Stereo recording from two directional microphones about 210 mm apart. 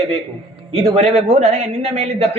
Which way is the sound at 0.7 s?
25° right (ahead or behind).